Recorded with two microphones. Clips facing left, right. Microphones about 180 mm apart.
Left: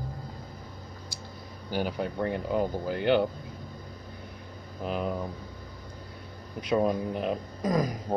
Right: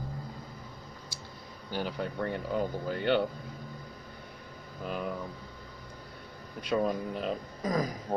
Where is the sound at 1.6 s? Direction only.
10° left (ahead or behind).